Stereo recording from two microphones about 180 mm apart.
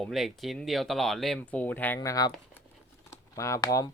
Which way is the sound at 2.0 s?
20° left (ahead or behind).